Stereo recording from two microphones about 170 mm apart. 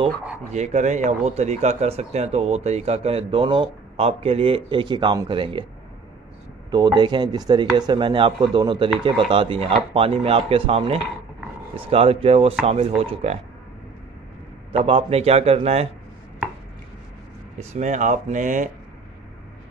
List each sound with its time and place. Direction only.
0.5 s speech: 45° right (ahead or behind)
6.7 s speech: 25° right (ahead or behind)
14.7 s speech: 35° right (ahead or behind)
17.6 s speech: 45° right (ahead or behind)